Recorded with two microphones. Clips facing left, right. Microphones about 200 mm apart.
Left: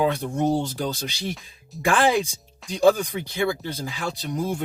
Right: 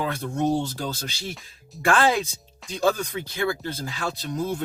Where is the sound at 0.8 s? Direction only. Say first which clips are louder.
Left 3 dB; 15° left (ahead or behind).